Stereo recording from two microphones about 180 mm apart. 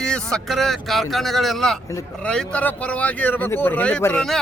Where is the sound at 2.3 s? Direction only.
5° left (ahead or behind).